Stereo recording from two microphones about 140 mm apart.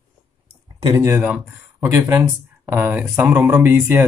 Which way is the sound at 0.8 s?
25° right (ahead or behind).